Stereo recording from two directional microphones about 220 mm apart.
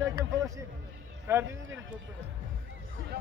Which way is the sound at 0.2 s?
15° right (ahead or behind).